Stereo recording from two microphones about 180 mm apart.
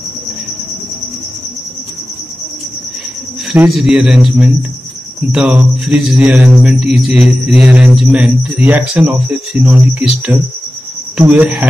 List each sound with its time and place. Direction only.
3.7 s a man's voice: 5° right (ahead or behind)
5.3 s mantra: 5° right (ahead or behind)